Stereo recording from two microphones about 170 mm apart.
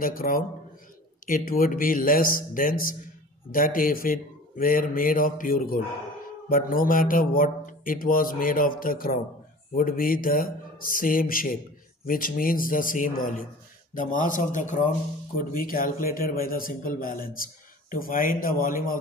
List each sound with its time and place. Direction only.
0.0 s a man's voice: 55° left (ahead or behind)